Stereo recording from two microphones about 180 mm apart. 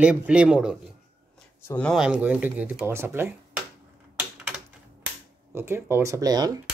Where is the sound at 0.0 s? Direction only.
5° right (ahead or behind).